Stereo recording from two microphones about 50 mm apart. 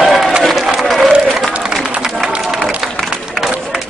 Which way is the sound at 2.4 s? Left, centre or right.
Centre.